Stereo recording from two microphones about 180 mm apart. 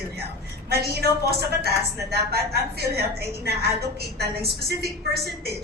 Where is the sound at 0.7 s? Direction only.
60° right (ahead or behind).